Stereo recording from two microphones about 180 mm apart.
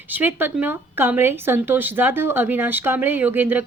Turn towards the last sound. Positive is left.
turn(degrees=-10)  # may be behind; listen again after turning